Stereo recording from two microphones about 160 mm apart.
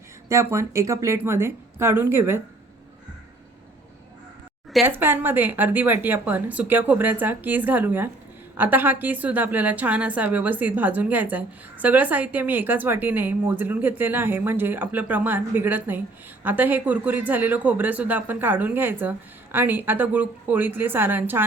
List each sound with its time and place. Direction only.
0.3 s a woman's voice: 20° right (ahead or behind)
4.8 s a woman's voice: 15° right (ahead or behind)